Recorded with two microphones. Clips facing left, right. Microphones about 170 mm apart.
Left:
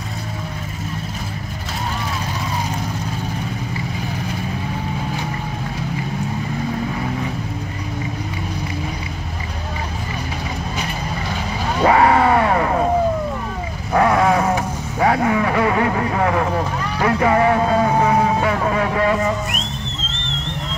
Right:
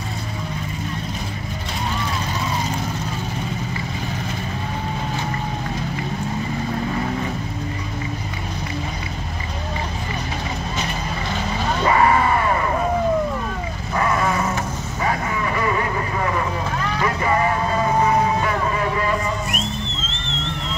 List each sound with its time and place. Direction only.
11.8 s a sound: 70° left (ahead or behind)
13.9 s vehicle: 65° left (ahead or behind)
17.0 s music: 65° left (ahead or behind)
18.8 s vehicle: 65° left (ahead or behind)